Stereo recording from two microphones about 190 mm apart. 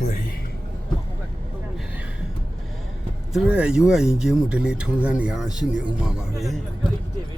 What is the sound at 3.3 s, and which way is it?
Speech, 5° right (ahead or behind).